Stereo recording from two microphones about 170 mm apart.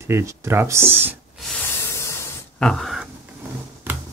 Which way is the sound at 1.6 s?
15° left (ahead or behind).